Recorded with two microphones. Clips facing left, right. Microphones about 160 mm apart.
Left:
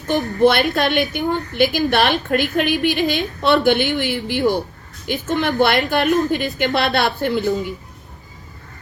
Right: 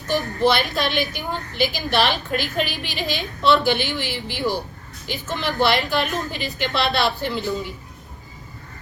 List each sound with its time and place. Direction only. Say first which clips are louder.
0.4 s a woman's voice: left 6 dB; 60° left (ahead or behind)